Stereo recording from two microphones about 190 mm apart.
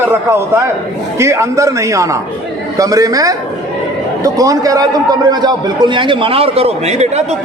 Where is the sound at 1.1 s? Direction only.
15° right (ahead or behind).